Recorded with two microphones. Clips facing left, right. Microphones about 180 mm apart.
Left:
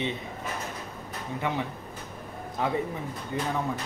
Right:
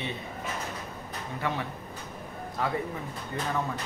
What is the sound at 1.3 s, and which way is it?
Speech, 15° left (ahead or behind).